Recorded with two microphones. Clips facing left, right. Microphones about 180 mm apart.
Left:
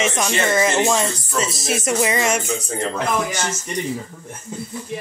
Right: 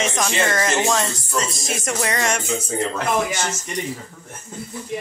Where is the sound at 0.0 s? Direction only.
5° left (ahead or behind).